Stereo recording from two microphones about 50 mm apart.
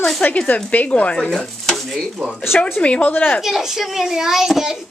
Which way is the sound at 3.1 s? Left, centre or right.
Left.